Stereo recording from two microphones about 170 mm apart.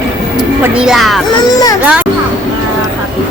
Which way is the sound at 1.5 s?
20° left (ahead or behind).